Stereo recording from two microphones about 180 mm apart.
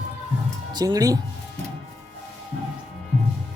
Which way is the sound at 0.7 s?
20° right (ahead or behind).